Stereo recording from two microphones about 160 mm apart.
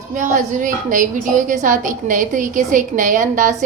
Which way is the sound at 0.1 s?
50° right (ahead or behind).